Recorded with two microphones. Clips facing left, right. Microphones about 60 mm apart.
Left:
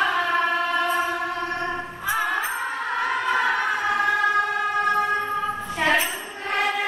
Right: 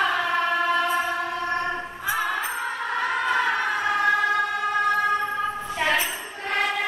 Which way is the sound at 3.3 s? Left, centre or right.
Centre.